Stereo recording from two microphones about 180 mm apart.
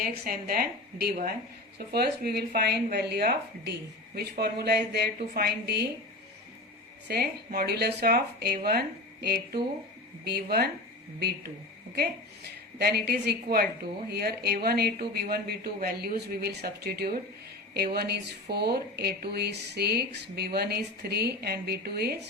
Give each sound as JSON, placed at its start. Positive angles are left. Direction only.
{"t": 0.1, "sound": "speech", "side_deg": -55}
{"t": 7.1, "sound": "speech", "side_deg": -60}
{"t": 12.8, "sound": "speech", "side_deg": -65}